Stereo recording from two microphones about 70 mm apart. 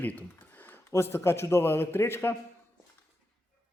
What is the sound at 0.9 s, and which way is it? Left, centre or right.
A man's voice, left.